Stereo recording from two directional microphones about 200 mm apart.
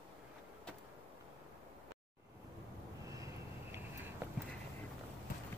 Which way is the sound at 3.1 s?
15° right (ahead or behind).